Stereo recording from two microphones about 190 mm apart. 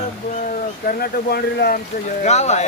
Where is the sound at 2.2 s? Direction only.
35° left (ahead or behind).